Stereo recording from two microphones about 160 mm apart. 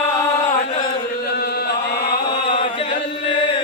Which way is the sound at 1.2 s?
85° left.